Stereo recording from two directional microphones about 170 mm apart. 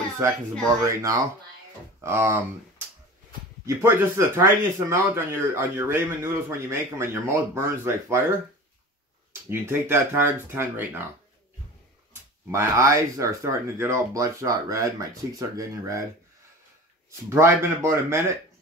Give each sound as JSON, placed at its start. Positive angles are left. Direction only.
{"t": 0.2, "sound": "speech", "side_deg": -15}
{"t": 3.6, "sound": "speech", "side_deg": -15}
{"t": 9.3, "sound": "speech", "side_deg": -15}
{"t": 12.1, "sound": "speech", "side_deg": -15}
{"t": 17.3, "sound": "speech", "side_deg": -15}